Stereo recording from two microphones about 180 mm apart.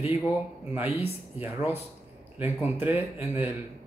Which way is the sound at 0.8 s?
35° left (ahead or behind).